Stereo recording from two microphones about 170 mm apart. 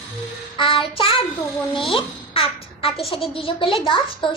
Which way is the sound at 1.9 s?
30° left (ahead or behind).